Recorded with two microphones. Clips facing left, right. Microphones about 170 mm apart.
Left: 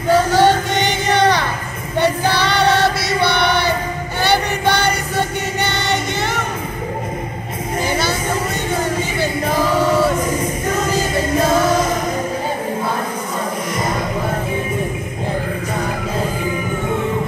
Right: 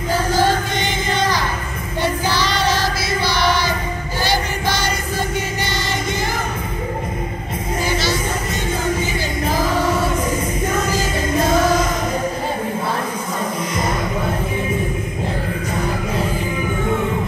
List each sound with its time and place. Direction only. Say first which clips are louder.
0.1 s music: left 5 dB; 65° left (ahead or behind)
2.0 s choir: left 4 dB; 65° left (ahead or behind)
4.2 s music: left 5 dB; 65° left (ahead or behind)